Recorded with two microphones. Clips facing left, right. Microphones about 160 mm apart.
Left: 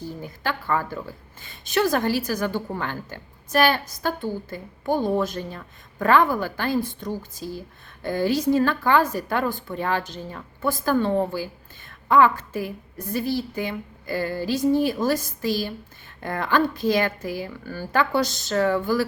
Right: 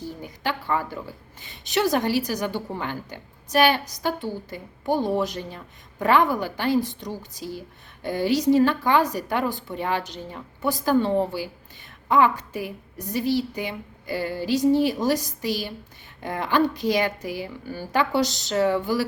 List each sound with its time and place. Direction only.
0.2 s a woman's voice: 15° right (ahead or behind)